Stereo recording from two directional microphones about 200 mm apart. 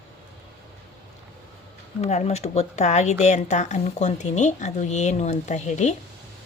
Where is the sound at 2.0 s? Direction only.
35° left (ahead or behind).